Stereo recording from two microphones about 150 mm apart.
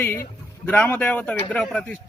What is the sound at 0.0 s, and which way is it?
Speech, 15° left (ahead or behind).